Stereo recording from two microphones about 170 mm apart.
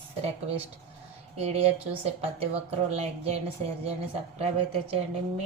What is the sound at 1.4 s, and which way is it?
Speech, 35° right (ahead or behind).